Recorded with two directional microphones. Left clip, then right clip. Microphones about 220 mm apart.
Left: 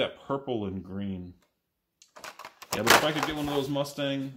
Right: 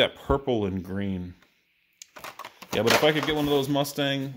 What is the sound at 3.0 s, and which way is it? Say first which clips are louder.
Speech: right 6 dB; 50° right (ahead or behind).